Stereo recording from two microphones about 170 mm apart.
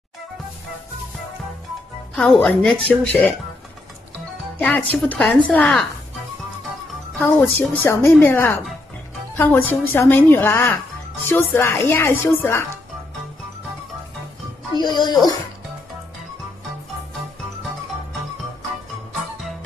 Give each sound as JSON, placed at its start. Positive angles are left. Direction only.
{"t": 2.1, "sound": "a woman's voice", "side_deg": 0}
{"t": 4.6, "sound": "a woman's voice", "side_deg": 5}
{"t": 7.2, "sound": "a woman's voice", "side_deg": 10}
{"t": 14.8, "sound": "speech", "side_deg": 25}